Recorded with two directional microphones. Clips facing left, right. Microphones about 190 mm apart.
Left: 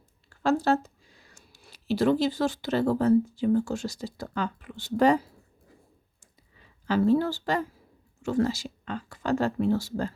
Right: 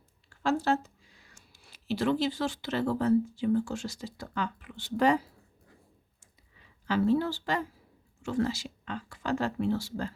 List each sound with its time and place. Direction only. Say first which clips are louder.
0.4 s speech: left 4 dB; 40° left (ahead or behind)
6.8 s speech: left 3 dB; 40° left (ahead or behind)